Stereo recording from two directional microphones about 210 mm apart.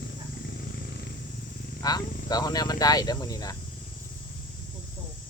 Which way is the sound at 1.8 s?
20° left (ahead or behind).